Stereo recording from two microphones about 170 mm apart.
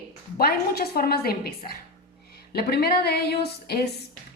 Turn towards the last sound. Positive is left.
turn(degrees=70)  # may be behind; listen again after turning